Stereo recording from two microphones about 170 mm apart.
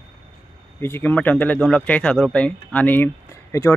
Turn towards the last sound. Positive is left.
turn(degrees=15)  # may be behind; listen again after turning